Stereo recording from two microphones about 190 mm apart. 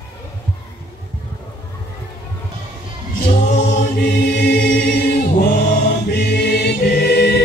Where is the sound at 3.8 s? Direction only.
55° left (ahead or behind).